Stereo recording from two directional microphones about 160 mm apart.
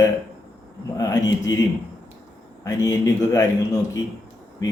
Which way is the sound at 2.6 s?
20° left (ahead or behind).